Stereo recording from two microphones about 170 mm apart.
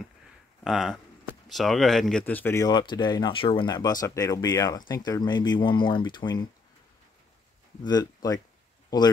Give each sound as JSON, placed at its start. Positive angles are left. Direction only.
{"t": 0.7, "sound": "speech", "side_deg": 0}
{"t": 7.8, "sound": "speech", "side_deg": 25}